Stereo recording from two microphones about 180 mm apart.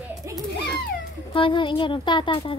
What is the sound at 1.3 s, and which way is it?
Speech, 30° left (ahead or behind).